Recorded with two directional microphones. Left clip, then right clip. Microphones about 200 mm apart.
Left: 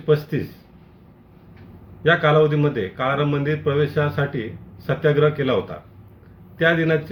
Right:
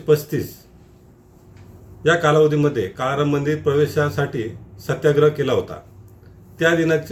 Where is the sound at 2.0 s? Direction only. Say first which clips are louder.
Right 1 dB; 15° right (ahead or behind).